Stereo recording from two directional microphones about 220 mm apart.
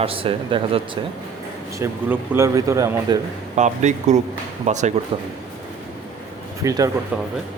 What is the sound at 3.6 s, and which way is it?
Speech, 30° right (ahead or behind).